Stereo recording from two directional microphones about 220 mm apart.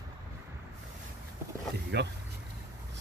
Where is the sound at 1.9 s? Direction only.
50° right (ahead or behind).